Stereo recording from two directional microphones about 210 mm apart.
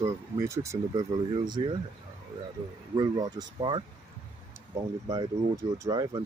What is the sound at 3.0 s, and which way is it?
Speech, 20° right (ahead or behind).